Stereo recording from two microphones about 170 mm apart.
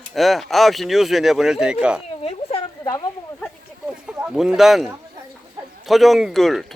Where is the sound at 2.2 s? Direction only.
35° left (ahead or behind).